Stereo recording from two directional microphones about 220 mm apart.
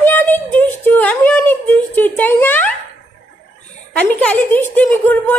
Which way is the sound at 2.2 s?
10° left (ahead or behind).